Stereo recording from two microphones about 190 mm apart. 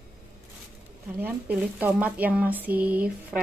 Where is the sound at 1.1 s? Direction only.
10° right (ahead or behind).